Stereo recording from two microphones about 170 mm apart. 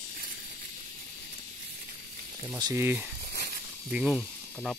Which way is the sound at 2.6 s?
15° right (ahead or behind).